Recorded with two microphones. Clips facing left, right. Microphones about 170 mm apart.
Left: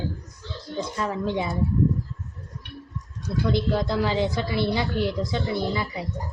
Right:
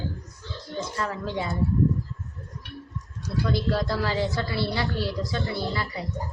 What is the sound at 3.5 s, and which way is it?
A woman's voice, 20° left (ahead or behind).